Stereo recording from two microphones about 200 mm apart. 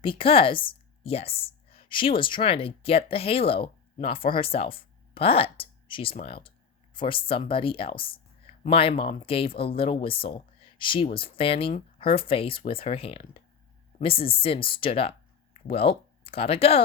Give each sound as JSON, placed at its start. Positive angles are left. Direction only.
{"t": 0.0, "sound": "a woman's voice", "side_deg": 25}